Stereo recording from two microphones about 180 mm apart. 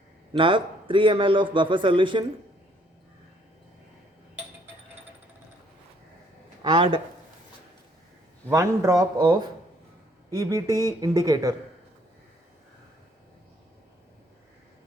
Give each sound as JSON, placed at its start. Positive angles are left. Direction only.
{"t": 0.3, "sound": "a man's voice", "side_deg": -30}
{"t": 6.6, "sound": "speech", "side_deg": -30}
{"t": 8.4, "sound": "a man's voice", "side_deg": -15}
{"t": 10.3, "sound": "a man's voice", "side_deg": -15}